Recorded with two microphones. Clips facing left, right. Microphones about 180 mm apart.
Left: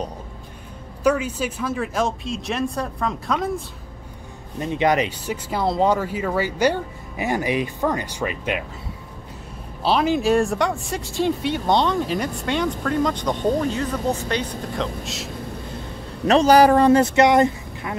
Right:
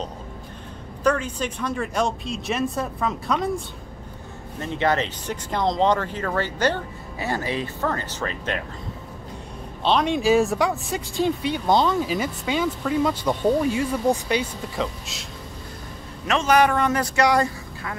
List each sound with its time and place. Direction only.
1.0 s speech: 10° left (ahead or behind)
4.6 s speech: 15° left (ahead or behind)
9.8 s speech: 5° left (ahead or behind)
16.3 s speech: 35° left (ahead or behind)